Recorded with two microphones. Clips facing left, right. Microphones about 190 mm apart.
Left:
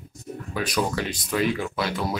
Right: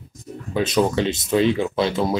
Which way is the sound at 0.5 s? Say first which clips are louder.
Right 7 dB; 25° right (ahead or behind).